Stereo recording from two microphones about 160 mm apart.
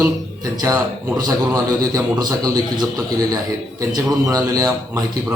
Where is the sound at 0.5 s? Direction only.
20° right (ahead or behind).